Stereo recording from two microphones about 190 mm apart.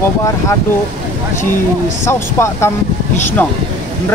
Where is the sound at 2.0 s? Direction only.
15° left (ahead or behind).